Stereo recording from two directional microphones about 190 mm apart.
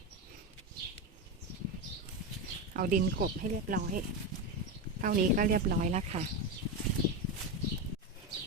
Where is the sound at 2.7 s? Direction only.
50° right (ahead or behind).